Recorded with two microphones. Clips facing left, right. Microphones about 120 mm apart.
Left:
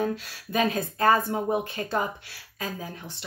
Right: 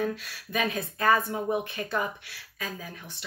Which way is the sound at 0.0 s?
30° left (ahead or behind).